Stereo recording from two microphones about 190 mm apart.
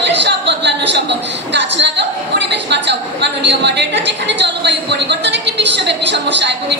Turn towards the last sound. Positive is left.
turn(degrees=-65)  # may be behind; listen again after turning